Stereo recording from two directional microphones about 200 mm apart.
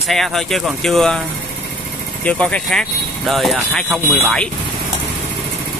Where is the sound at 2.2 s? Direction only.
5° left (ahead or behind).